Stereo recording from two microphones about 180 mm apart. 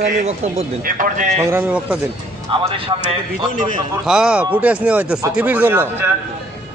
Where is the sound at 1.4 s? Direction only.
10° right (ahead or behind).